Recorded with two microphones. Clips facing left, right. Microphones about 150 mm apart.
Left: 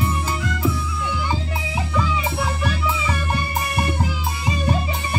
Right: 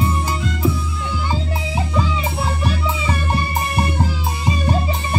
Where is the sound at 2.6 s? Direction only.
30° right (ahead or behind).